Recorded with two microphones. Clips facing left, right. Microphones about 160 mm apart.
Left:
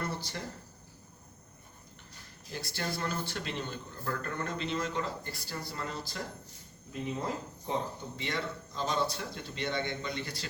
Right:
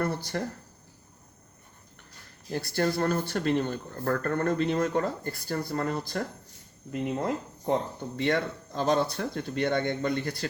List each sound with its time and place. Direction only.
0.0 s speech: 60° right (ahead or behind)
2.5 s speech: 60° right (ahead or behind)